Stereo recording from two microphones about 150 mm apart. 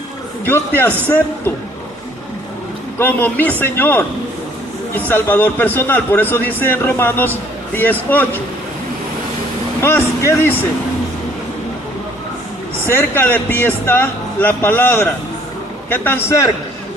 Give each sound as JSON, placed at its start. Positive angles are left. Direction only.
{"t": 0.4, "sound": "a man's voice", "side_deg": 15}
{"t": 3.0, "sound": "a man's voice", "side_deg": 15}
{"t": 9.8, "sound": "a man's voice", "side_deg": 15}
{"t": 12.8, "sound": "a man's voice", "side_deg": 15}